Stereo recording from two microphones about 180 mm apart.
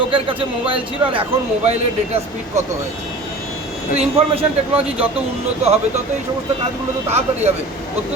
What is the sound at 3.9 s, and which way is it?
Speech, 30° right (ahead or behind).